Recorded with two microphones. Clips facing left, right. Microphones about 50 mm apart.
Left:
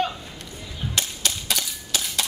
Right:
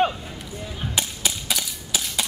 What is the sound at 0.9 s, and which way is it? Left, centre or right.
Cap gun, centre.